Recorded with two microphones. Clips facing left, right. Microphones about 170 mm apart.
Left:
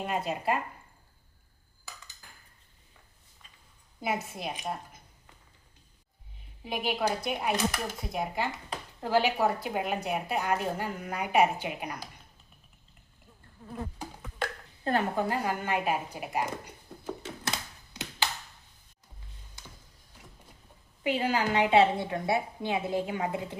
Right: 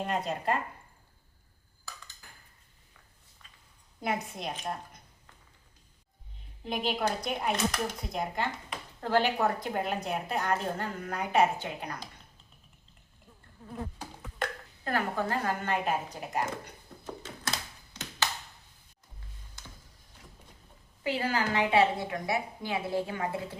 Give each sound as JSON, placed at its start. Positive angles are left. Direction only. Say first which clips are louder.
{"t": 0.0, "sound": "speech", "louder": "even", "side_deg": 5}
{"t": 4.0, "sound": "speech", "louder": "even", "side_deg": 5}
{"t": 6.7, "sound": "speech", "louder": "left 1 dB", "side_deg": 5}
{"t": 14.0, "sound": "a sound", "louder": "left 1 dB", "side_deg": 5}
{"t": 14.8, "sound": "speech", "louder": "left 3 dB", "side_deg": 20}
{"t": 21.0, "sound": "a woman's voice", "louder": "left 2 dB", "side_deg": 15}